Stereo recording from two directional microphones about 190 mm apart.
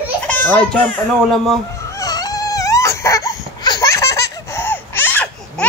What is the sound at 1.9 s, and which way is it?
Baby cry, 20° left (ahead or behind).